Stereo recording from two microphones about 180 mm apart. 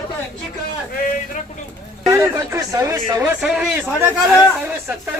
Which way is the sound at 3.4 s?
5° right (ahead or behind).